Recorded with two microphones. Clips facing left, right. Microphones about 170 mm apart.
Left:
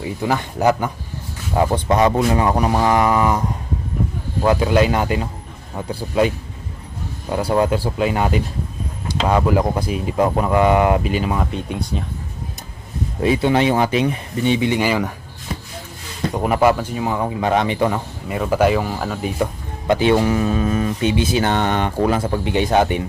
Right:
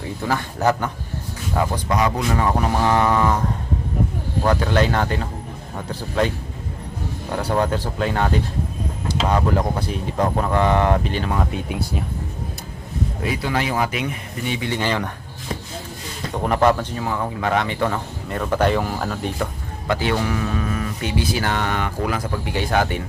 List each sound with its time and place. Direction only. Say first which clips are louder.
0.2 s speech: left 3 dB; 15° left (ahead or behind)
1.5 s speech: left 5 dB; 25° left (ahead or behind)
4.4 s speech: left 4 dB; 10° left (ahead or behind)
13.2 s speech: left 9 dB; 25° left (ahead or behind); by 15.1 s 10° left (ahead or behind)
16.3 s speech: left 2 dB; 10° left (ahead or behind)
19.9 s speech: left 6 dB; 20° left (ahead or behind)